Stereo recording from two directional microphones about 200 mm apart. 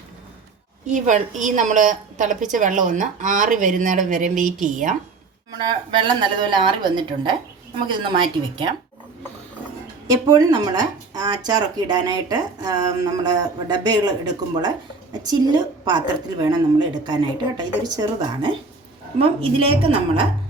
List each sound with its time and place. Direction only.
0.9 s a woman's voice: 40° right (ahead or behind)
5.5 s speech: 20° right (ahead or behind)
10.1 s speech: 20° right (ahead or behind)
15.2 s speech: 20° right (ahead or behind)